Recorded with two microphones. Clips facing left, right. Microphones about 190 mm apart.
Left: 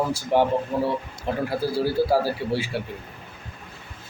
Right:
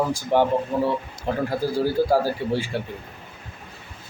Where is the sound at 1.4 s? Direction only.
10° left (ahead or behind).